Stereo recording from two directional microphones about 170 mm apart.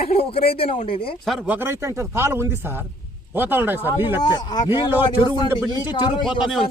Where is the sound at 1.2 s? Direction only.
10° right (ahead or behind).